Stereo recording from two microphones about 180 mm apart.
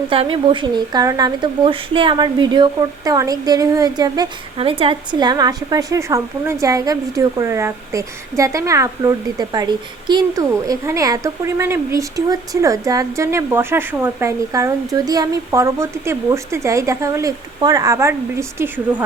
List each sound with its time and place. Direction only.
0.1 s speech: 30° right (ahead or behind); by 19.0 s 15° right (ahead or behind)